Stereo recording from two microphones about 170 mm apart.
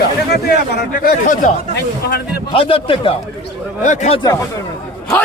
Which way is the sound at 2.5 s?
35° left (ahead or behind).